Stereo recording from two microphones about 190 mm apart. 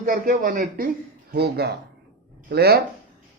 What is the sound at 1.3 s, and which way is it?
Speech, 55° right (ahead or behind).